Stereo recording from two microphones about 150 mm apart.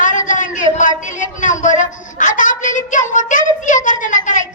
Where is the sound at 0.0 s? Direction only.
60° left (ahead or behind).